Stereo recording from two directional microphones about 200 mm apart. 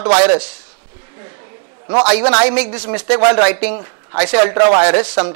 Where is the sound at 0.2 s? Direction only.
10° right (ahead or behind).